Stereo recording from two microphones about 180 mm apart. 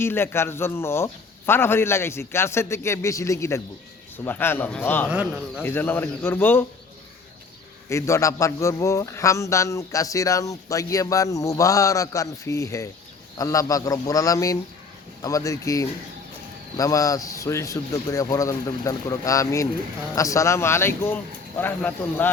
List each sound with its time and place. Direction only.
0.0 s a man's voice: 15° left (ahead or behind)
5.0 s speech: 5° right (ahead or behind)
5.6 s a man's voice: 10° left (ahead or behind)
7.9 s a man's voice: 15° left (ahead or behind)